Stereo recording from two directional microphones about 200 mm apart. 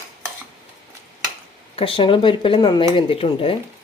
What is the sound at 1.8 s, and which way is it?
Speech, 25° left (ahead or behind).